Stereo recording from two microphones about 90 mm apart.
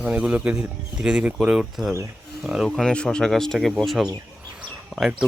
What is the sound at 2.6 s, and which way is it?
Speech, 5° left (ahead or behind).